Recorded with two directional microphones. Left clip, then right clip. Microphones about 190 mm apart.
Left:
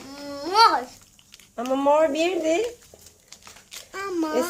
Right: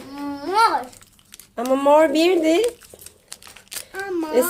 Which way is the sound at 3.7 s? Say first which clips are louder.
Right 6 dB; 40° right (ahead or behind).